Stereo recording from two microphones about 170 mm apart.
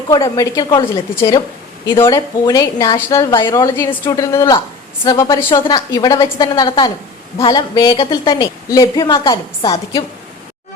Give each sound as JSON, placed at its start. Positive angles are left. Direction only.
{"t": 0.1, "sound": "speech", "side_deg": 20}